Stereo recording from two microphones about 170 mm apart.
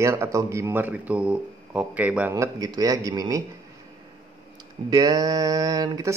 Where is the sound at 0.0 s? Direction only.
15° right (ahead or behind).